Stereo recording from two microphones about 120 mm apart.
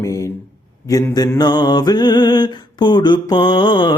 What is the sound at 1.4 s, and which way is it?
Mantra, 35° left (ahead or behind).